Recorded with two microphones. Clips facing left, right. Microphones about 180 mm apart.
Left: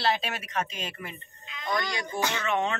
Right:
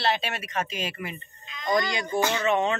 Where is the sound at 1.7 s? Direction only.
20° right (ahead or behind).